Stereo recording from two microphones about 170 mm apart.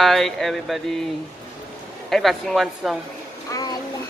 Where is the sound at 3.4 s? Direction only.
20° left (ahead or behind).